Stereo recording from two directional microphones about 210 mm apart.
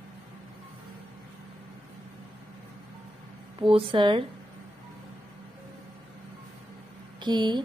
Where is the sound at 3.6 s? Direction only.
25° right (ahead or behind).